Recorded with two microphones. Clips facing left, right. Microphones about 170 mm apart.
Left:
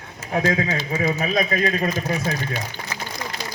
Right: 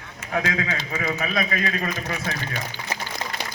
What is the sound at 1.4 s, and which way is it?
Speech, 35° left (ahead or behind).